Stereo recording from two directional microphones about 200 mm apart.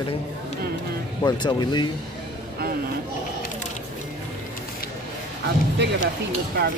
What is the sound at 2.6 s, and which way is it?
Speech, 50° right (ahead or behind).